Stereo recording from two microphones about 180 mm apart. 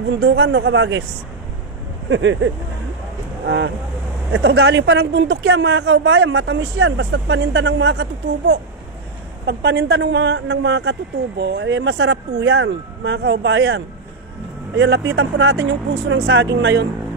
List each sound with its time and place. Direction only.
0.2 s speech: 75° right (ahead or behind); by 1.0 s 90° right
2.0 s speech: 90° right
3.4 s speech: 75° right (ahead or behind)